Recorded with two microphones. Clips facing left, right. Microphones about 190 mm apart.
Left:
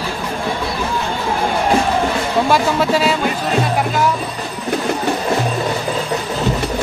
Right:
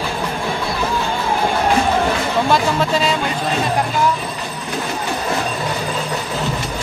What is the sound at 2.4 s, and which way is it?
Speech, 10° left (ahead or behind).